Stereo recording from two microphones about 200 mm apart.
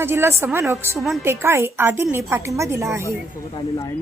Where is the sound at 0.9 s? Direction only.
Centre (ahead or behind).